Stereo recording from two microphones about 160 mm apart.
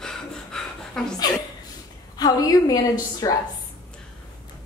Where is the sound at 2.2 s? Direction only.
25° left (ahead or behind).